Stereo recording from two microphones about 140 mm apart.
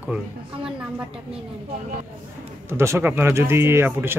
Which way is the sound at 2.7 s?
20° right (ahead or behind).